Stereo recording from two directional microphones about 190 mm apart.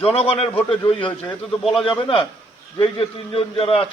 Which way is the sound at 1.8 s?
25° left (ahead or behind).